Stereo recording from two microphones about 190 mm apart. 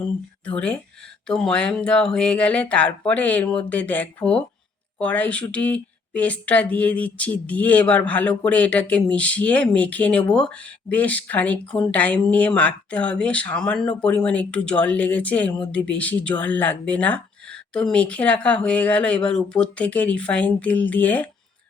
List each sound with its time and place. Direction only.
0.4 s speech: 5° left (ahead or behind)